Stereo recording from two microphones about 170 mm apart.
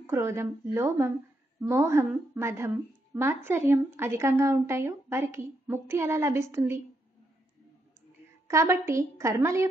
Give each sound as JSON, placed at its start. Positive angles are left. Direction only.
{"t": 0.0, "sound": "a woman's voice", "side_deg": -15}
{"t": 8.5, "sound": "a woman's voice", "side_deg": -15}